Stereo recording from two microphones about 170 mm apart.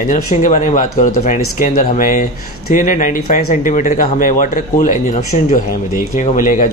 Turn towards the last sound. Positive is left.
turn(degrees=50)  # may be behind; listen again after turning